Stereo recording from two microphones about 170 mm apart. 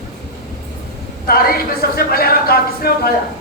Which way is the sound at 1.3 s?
60° left (ahead or behind).